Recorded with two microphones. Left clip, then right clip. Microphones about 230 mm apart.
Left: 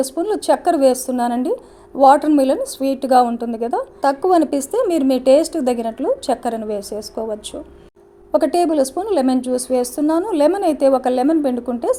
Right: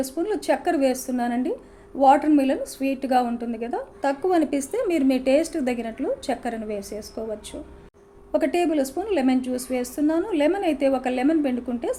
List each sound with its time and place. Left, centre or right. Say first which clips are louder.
0.0 s a woman's voice: left 6 dB; left
8.3 s a woman's voice: left 6 dB; left